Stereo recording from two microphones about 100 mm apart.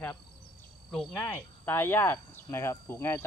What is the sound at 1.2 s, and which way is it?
Speech, 25° left (ahead or behind).